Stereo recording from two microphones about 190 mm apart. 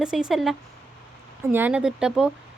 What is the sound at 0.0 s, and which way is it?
Speech, 5° right (ahead or behind).